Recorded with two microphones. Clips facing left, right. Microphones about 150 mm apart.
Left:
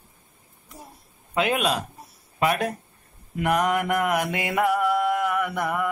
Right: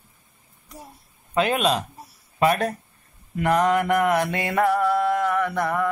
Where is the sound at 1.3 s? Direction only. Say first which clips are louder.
Right 2 dB; 10° left (ahead or behind).